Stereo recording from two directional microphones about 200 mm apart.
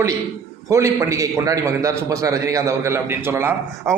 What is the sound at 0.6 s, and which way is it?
A man's voice, 15° right (ahead or behind).